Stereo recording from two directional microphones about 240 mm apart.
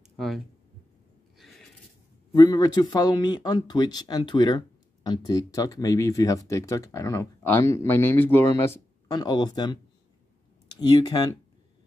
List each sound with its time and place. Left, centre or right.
0.2 s speech: centre
2.3 s speech: centre
10.8 s speech: centre